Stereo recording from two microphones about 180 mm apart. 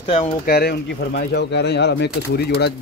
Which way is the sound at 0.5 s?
65° left (ahead or behind).